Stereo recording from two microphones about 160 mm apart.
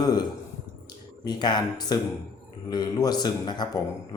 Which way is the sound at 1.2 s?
25° left (ahead or behind).